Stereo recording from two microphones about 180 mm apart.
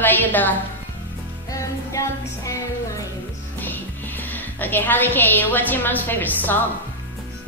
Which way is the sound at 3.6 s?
10° left (ahead or behind).